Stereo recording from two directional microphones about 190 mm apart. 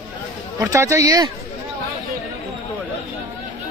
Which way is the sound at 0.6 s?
15° right (ahead or behind).